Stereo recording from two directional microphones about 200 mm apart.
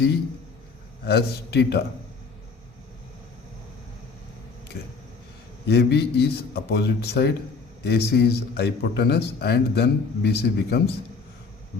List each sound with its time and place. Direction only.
1.0 s a man's voice: 55° left (ahead or behind)
5.6 s a man's voice: 55° left (ahead or behind)